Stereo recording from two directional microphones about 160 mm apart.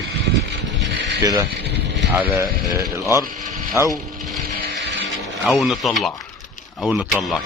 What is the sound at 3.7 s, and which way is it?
Speech, 20° left (ahead or behind).